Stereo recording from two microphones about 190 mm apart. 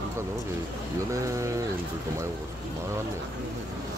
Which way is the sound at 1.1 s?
15° right (ahead or behind).